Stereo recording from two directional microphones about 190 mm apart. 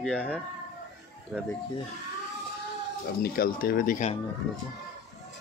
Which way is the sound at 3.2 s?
50° left (ahead or behind).